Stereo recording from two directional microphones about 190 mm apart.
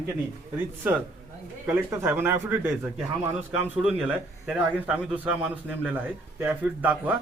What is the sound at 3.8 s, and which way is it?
A man's voice, 5° right (ahead or behind).